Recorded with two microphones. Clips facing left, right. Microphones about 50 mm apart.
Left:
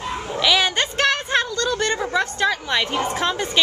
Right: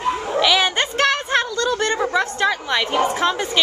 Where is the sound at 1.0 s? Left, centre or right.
Centre.